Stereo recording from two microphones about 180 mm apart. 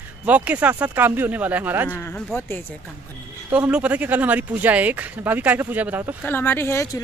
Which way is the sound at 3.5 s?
10° right (ahead or behind).